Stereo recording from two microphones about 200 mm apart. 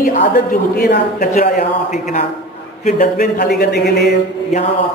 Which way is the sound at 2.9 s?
50° left (ahead or behind).